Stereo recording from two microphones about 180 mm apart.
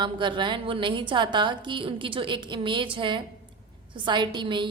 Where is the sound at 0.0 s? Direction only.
25° right (ahead or behind).